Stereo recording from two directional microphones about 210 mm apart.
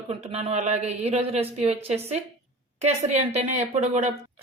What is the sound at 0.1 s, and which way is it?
Speech, 30° right (ahead or behind).